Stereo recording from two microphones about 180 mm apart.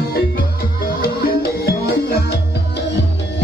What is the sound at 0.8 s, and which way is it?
Music, 55° left (ahead or behind).